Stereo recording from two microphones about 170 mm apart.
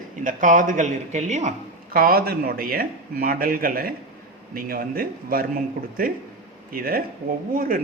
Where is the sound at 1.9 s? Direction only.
60° right (ahead or behind).